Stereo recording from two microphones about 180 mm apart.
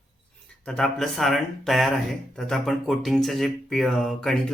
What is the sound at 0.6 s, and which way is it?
Speech, 5° left (ahead or behind).